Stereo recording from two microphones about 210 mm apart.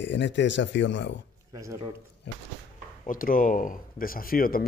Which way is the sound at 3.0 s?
40° left (ahead or behind).